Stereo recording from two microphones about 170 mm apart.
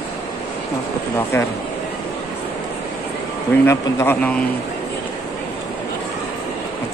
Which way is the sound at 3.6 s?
15° left (ahead or behind).